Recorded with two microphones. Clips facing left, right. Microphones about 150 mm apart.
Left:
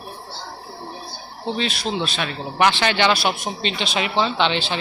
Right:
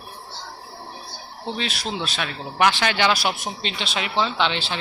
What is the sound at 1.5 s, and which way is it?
A man's voice, 5° right (ahead or behind).